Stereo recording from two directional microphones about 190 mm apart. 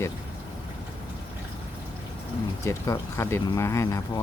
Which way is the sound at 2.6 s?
15° left (ahead or behind).